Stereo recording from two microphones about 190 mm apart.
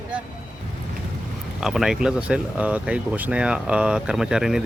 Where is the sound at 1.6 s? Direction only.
Centre (ahead or behind).